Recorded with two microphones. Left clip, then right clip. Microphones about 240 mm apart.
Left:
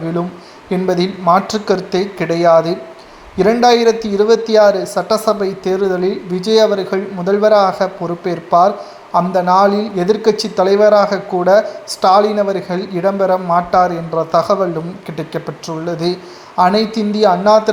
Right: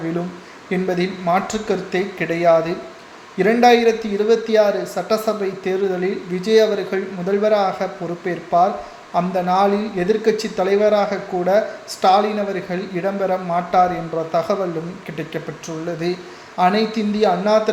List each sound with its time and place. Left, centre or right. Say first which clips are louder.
0.7 s speech: left 5 dB; left